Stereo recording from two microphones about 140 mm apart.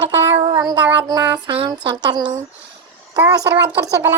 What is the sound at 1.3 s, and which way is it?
Music, 35° right (ahead or behind).